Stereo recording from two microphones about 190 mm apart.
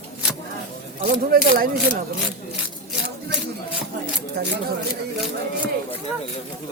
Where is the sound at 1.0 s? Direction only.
50° right (ahead or behind).